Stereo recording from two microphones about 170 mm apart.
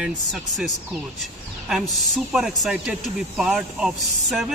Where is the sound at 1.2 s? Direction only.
5° right (ahead or behind).